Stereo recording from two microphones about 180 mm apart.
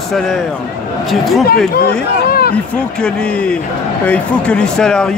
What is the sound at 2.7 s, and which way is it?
Speech, 5° left (ahead or behind).